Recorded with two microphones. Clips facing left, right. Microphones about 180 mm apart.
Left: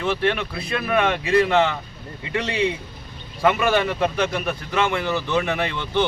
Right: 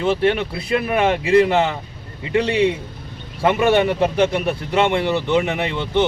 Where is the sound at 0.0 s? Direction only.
25° right (ahead or behind).